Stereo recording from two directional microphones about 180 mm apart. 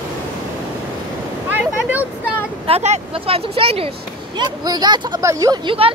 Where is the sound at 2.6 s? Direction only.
35° right (ahead or behind).